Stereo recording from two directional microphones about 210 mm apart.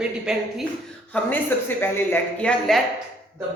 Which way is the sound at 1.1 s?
5° left (ahead or behind).